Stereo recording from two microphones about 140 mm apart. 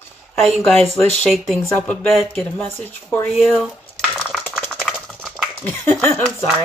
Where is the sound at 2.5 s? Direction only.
10° left (ahead or behind).